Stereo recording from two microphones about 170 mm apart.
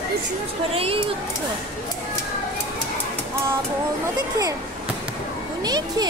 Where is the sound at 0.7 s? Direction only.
35° right (ahead or behind).